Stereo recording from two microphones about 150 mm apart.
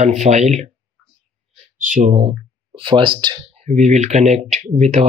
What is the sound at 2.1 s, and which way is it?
Speech, 40° right (ahead or behind).